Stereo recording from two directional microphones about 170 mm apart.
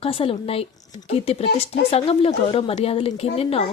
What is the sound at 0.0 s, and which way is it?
Speech, 35° left (ahead or behind).